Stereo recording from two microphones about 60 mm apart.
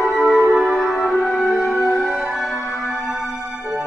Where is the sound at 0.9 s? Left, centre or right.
Centre.